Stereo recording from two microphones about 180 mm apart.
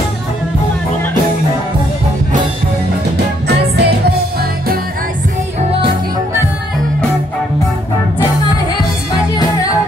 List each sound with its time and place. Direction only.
3.4 s music: 65° right (ahead or behind)